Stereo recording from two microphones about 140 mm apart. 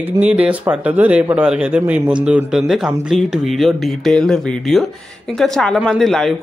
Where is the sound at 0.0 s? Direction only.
10° right (ahead or behind).